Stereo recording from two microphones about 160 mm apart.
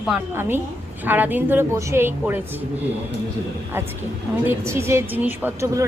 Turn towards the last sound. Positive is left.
turn(degrees=-15)  # may be behind; listen again after turning